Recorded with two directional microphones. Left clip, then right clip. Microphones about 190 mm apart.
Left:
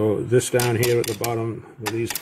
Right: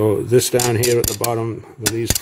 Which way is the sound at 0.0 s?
35° right (ahead or behind).